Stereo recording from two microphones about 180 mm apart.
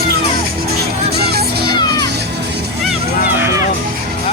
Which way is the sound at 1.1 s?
65° right (ahead or behind).